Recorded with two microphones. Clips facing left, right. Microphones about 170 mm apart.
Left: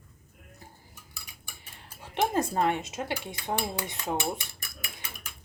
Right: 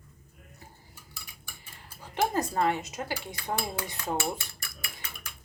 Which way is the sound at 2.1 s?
25° left (ahead or behind).